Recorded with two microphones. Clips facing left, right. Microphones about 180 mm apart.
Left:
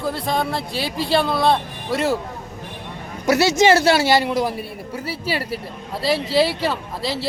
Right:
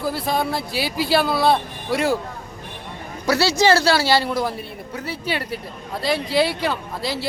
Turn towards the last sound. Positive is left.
turn(degrees=0)  # may be behind; listen again after turning